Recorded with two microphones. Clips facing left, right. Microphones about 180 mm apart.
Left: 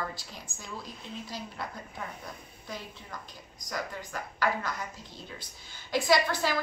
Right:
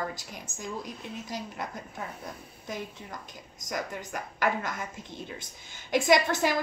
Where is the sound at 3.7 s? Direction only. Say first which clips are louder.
Right 2 dB; 20° right (ahead or behind).